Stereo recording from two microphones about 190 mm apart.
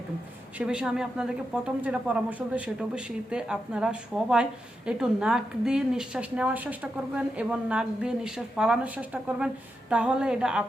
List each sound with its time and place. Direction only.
0.6 s a woman's voice: 5° right (ahead or behind)